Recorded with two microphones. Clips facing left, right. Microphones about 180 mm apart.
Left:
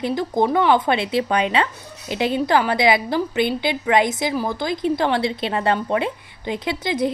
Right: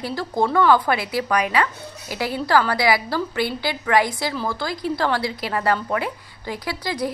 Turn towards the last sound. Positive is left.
turn(degrees=20)  # may be behind; listen again after turning